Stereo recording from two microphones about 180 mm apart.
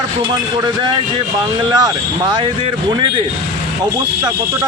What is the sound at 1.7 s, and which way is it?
Speech, 20° right (ahead or behind).